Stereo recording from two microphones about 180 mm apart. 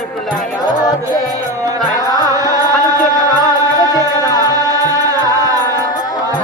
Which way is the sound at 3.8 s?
20° left (ahead or behind).